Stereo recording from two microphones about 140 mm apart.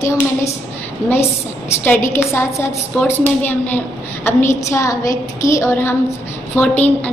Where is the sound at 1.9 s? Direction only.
15° left (ahead or behind).